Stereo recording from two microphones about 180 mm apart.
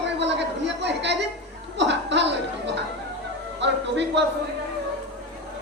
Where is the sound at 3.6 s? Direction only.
75° right (ahead or behind).